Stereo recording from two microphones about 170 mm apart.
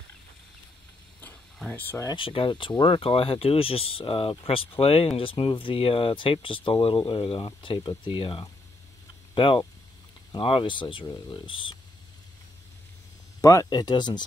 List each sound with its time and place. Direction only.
1.2 s a sound: 10° left (ahead or behind)
2.1 s speech: 30° left (ahead or behind)
13.4 s speech: 20° left (ahead or behind)